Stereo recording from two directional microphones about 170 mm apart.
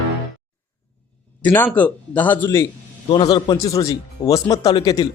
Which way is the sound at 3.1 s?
25° left (ahead or behind).